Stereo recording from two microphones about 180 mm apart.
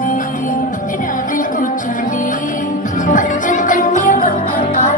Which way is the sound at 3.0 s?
45° left (ahead or behind).